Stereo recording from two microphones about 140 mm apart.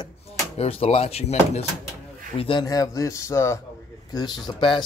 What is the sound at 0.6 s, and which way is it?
Speech, 45° left (ahead or behind).